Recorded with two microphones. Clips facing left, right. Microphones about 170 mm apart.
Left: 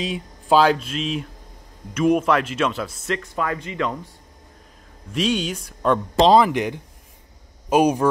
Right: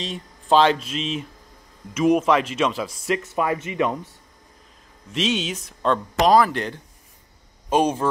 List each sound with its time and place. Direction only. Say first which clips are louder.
0.0 s speech: left 4 dB; 10° left (ahead or behind)
3.3 s speech: right 3 dB; 20° right (ahead or behind)
5.2 s speech: left 2 dB; centre (ahead or behind)
6.1 s speech: left 2 dB; 25° left (ahead or behind)